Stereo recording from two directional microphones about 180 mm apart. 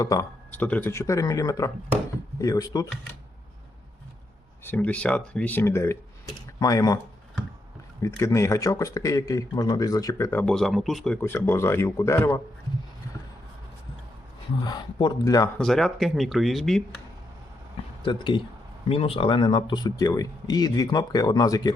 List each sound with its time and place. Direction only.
0.0 s speech: 20° left (ahead or behind)
4.6 s speech: 10° left (ahead or behind)
8.0 s speech: 15° left (ahead or behind)
10.4 s speech: centre (ahead or behind)
14.6 s speech: 25° left (ahead or behind)
15.5 s speech: centre (ahead or behind)
18.0 s speech: 25° left (ahead or behind)